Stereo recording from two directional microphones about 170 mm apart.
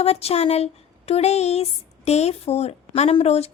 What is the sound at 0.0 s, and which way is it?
A woman's voice, 35° left (ahead or behind).